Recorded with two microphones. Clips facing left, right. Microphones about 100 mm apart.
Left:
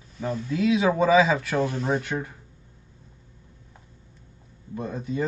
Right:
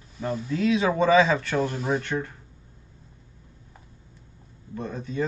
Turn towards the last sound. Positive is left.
turn(degrees=15)  # may be behind; listen again after turning